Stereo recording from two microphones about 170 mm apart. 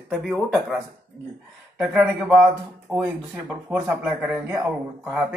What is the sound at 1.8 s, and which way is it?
A man's voice, 5° right (ahead or behind).